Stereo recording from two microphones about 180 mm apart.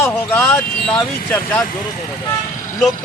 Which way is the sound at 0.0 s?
15° left (ahead or behind).